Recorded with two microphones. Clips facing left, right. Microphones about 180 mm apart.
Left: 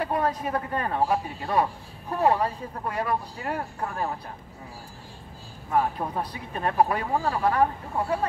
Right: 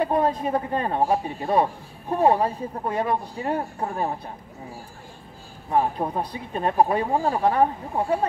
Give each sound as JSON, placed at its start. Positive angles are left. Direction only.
{"t": 0.0, "sound": "speech", "side_deg": -25}
{"t": 5.7, "sound": "speech", "side_deg": -30}